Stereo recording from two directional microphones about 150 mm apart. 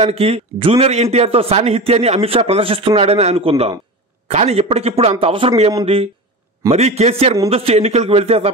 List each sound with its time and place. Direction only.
0.0 s a man's voice: 45° right (ahead or behind); by 5.9 s 25° right (ahead or behind)
6.7 s a man's voice: 45° right (ahead or behind)